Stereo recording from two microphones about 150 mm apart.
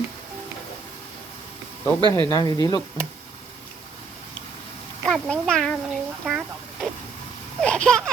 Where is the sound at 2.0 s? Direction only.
30° right (ahead or behind).